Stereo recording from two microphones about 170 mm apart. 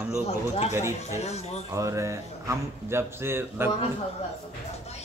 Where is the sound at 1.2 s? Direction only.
40° left (ahead or behind).